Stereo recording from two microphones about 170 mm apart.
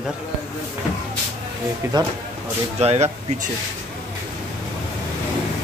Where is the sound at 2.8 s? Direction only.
40° right (ahead or behind).